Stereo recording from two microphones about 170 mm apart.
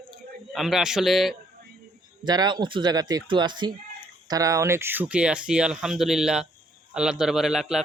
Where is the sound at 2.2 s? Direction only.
25° right (ahead or behind); by 7.8 s centre (ahead or behind).